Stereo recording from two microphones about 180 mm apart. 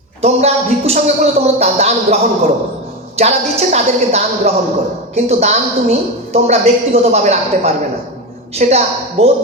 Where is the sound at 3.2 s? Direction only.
35° right (ahead or behind).